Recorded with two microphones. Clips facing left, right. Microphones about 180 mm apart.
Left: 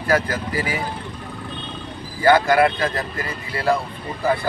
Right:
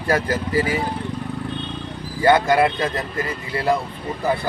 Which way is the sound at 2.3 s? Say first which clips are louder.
Left 1 dB; 20° right (ahead or behind).